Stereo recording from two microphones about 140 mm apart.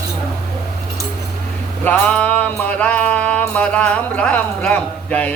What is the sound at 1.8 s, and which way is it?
Music, 10° left (ahead or behind).